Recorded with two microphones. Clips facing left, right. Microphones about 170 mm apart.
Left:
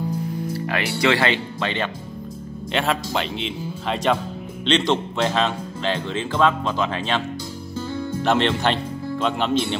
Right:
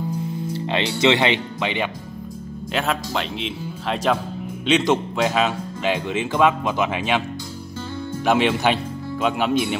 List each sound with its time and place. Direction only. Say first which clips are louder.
0.5 s speech: right 3 dB; 25° right (ahead or behind)
2.7 s speech: left 1 dB; centre (ahead or behind)